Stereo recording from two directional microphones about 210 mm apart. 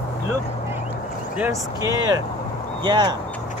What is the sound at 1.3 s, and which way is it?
Speech, 10° right (ahead or behind).